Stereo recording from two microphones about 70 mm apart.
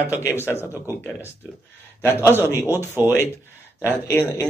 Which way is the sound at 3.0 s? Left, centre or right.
Right.